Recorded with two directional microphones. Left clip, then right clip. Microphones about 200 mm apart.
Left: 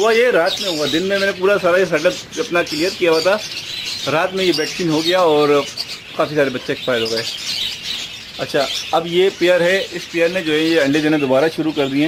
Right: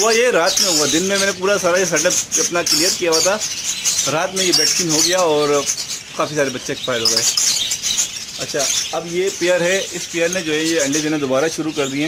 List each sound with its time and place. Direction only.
0.0 s speech: centre (ahead or behind)
8.5 s speech: 20° left (ahead or behind)
9.4 s speech: 5° left (ahead or behind)